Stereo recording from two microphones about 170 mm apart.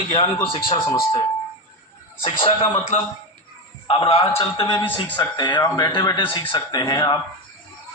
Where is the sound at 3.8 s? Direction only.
35° left (ahead or behind).